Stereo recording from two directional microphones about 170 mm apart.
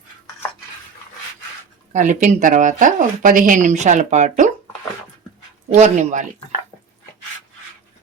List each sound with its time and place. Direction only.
1.9 s speech: 45° right (ahead or behind)
5.7 s speech: 45° right (ahead or behind)